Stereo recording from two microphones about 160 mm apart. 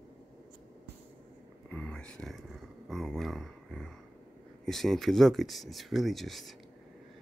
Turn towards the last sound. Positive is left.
turn(degrees=0)  # may be behind; listen again after turning